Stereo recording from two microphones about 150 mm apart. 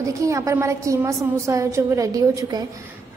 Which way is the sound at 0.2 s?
20° right (ahead or behind).